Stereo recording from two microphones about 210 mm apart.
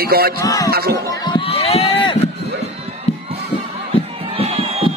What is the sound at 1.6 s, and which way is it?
Run, 30° left (ahead or behind).